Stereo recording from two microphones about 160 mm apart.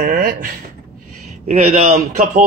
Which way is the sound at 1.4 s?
40° right (ahead or behind).